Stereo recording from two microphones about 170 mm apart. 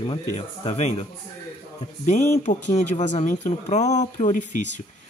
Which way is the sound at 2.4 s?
45° left (ahead or behind).